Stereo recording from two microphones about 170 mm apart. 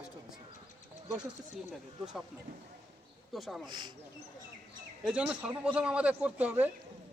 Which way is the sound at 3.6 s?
25° right (ahead or behind).